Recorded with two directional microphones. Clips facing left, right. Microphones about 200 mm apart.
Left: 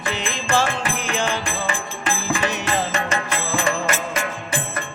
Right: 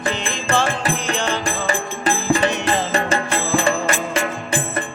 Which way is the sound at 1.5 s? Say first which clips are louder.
Right 4 dB; 35° right (ahead or behind).